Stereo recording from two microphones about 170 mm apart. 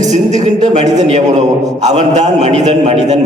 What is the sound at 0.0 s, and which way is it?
A man's voice, 45° right (ahead or behind).